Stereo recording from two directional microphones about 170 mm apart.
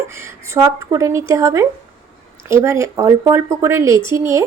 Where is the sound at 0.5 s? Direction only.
20° right (ahead or behind).